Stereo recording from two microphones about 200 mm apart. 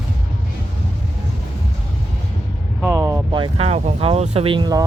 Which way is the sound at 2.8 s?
15° right (ahead or behind).